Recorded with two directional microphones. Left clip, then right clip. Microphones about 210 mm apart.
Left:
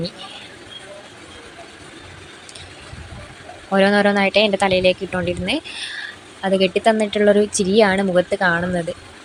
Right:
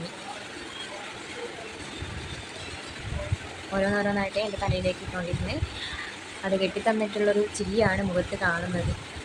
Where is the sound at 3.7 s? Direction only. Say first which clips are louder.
Left 11 dB; 35° left (ahead or behind).